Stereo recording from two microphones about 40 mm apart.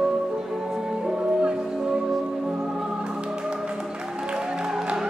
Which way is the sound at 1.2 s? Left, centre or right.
Right.